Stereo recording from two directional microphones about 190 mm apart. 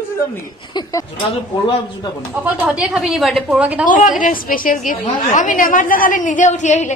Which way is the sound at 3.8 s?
45° left (ahead or behind).